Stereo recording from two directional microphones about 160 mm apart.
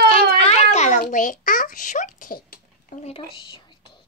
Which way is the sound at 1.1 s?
55° left (ahead or behind).